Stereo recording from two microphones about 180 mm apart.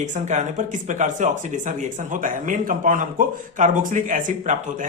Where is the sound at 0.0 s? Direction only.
40° right (ahead or behind).